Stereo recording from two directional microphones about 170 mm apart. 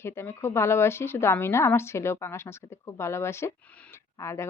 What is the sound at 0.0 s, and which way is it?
A woman's voice, 15° left (ahead or behind).